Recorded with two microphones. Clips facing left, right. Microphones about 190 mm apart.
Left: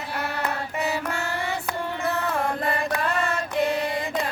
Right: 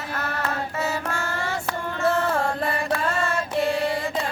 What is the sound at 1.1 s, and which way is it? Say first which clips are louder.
Child singing: even; 15° left (ahead or behind).